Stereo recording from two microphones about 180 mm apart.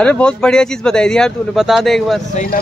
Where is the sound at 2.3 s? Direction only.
45° left (ahead or behind).